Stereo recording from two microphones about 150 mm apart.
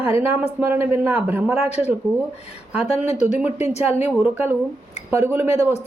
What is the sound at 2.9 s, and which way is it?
Speech, 50° left (ahead or behind).